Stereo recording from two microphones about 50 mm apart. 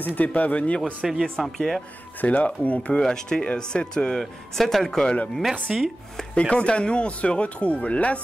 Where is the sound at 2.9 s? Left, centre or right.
Centre.